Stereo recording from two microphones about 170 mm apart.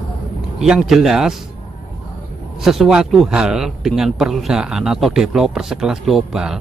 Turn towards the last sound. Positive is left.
turn(degrees=-5)  # may be behind; listen again after turning